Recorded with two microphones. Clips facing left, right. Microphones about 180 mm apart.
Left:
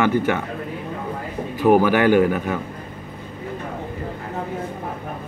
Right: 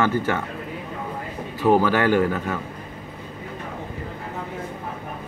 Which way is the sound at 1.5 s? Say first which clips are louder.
Left 3 dB; 15° left (ahead or behind).